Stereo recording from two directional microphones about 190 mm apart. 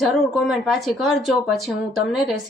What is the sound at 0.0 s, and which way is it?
A woman's voice, centre (ahead or behind).